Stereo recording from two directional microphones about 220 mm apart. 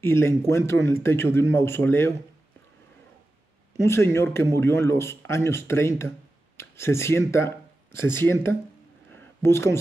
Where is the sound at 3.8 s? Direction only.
10° left (ahead or behind).